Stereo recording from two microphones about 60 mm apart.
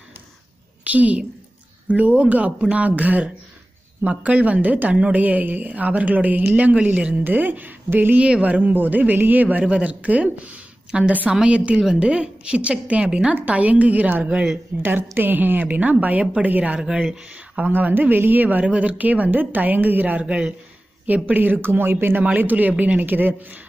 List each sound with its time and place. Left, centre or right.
0.8 s a woman's voice: right
8.2 s a woman's voice: right
17.6 s a woman's voice: right
21.1 s a woman's voice: right